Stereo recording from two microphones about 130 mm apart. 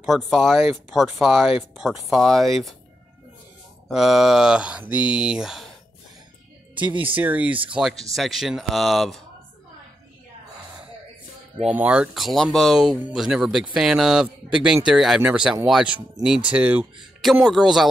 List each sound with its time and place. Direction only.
0.0 s speech: centre (ahead or behind)
3.9 s speech: centre (ahead or behind)
6.7 s music: 40° right (ahead or behind)
7.2 s speech: 10° right (ahead or behind)
7.9 s speech: centre (ahead or behind)
11.6 s speech: 10° right (ahead or behind)